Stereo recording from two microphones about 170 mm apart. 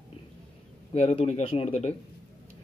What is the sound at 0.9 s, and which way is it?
Speech, 35° left (ahead or behind).